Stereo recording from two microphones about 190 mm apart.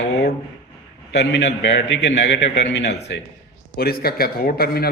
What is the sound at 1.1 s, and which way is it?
A man's voice, 65° left (ahead or behind).